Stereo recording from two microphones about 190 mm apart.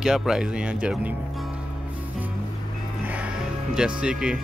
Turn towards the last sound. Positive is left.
turn(degrees=-5)  # may be behind; listen again after turning